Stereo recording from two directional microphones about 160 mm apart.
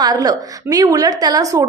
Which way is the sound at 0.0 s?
25° right (ahead or behind).